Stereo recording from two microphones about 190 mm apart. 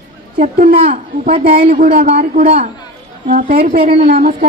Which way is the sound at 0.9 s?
50° right (ahead or behind).